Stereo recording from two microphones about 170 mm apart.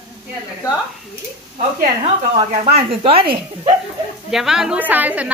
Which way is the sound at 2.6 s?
35° right (ahead or behind).